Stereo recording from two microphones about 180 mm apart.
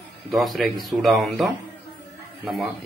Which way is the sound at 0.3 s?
Centre (ahead or behind).